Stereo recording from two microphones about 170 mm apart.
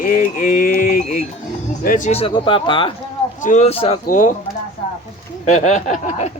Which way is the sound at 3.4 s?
40° left (ahead or behind).